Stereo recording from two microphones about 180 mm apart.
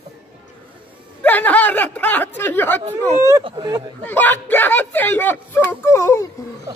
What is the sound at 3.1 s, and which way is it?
Speech, 15° right (ahead or behind).